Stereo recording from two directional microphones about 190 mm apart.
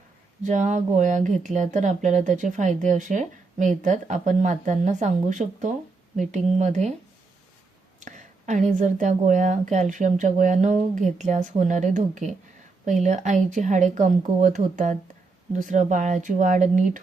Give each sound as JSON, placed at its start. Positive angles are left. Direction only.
{"t": 0.4, "sound": "speech", "side_deg": -40}
{"t": 7.9, "sound": "speech", "side_deg": -40}